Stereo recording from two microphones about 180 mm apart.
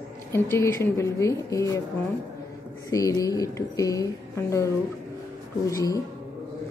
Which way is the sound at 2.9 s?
20° left (ahead or behind).